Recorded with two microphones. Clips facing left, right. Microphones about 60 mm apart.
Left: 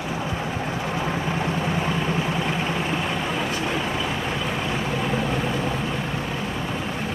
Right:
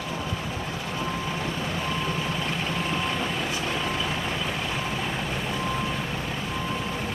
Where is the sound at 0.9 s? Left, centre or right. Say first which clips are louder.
Left 3 dB; left; by 5.0 s centre.